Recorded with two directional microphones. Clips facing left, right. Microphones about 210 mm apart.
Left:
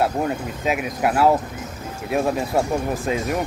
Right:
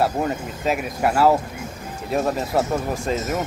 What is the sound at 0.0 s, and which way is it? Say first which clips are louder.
Speech: even; centre (ahead or behind).